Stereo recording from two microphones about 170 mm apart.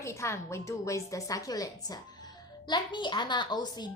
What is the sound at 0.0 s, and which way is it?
A woman's voice, 15° left (ahead or behind).